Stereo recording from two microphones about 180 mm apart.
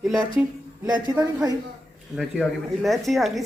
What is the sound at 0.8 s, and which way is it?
Speech, 20° right (ahead or behind).